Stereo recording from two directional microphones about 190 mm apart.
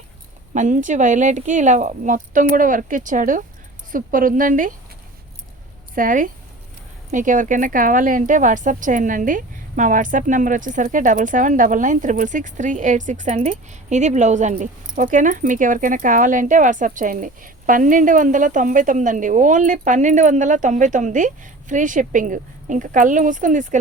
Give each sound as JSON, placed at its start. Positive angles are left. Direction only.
{"t": 0.5, "sound": "a woman's voice", "side_deg": -40}
{"t": 5.9, "sound": "a woman's voice", "side_deg": -45}